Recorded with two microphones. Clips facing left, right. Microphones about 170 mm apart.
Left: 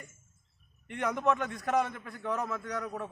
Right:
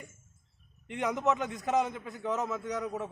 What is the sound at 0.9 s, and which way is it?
A man's voice, 15° right (ahead or behind).